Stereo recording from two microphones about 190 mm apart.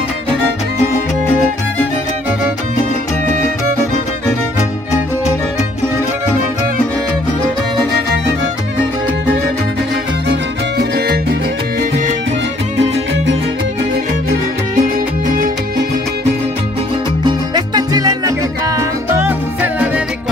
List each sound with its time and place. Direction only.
14.8 s music: 50° right (ahead or behind)
17.2 s music: 25° right (ahead or behind)